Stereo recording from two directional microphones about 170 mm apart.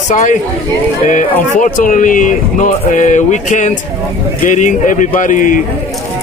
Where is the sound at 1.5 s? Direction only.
50° left (ahead or behind).